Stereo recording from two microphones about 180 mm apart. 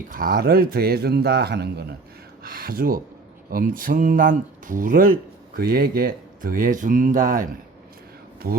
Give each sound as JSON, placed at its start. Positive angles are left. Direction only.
{"t": 0.1, "sound": "a man's voice", "side_deg": -50}
{"t": 8.4, "sound": "a man's voice", "side_deg": -60}